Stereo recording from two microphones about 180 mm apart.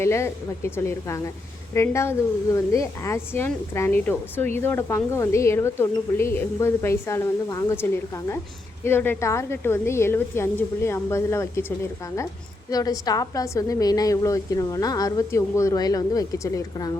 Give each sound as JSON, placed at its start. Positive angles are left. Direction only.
{"t": 0.0, "sound": "speech", "side_deg": 15}
{"t": 12.7, "sound": "a woman's voice", "side_deg": 20}